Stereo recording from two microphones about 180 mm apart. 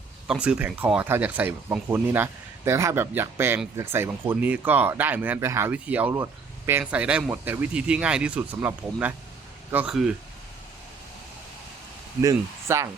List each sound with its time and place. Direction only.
0.3 s speech: 5° right (ahead or behind)
12.2 s speech: 15° right (ahead or behind)